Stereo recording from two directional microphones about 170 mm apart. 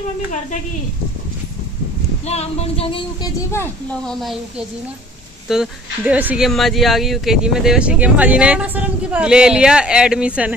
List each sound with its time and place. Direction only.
2.2 s speech: 40° left (ahead or behind)
3.5 s speech: 10° left (ahead or behind)